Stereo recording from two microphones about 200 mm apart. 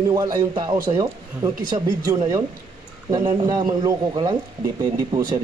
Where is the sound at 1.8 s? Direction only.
15° right (ahead or behind).